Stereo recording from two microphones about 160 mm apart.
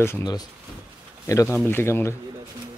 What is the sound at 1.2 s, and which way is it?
Speech, 20° left (ahead or behind).